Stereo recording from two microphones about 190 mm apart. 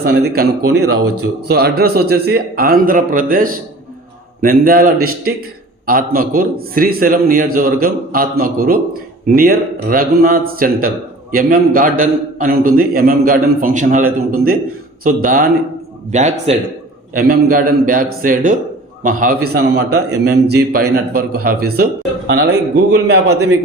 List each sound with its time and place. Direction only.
0.0 s a man's voice: 55° right (ahead or behind)